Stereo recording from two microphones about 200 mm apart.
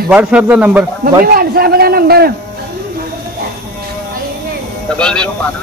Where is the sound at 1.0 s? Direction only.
45° right (ahead or behind).